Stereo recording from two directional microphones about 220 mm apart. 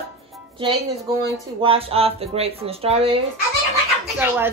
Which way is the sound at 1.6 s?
25° right (ahead or behind).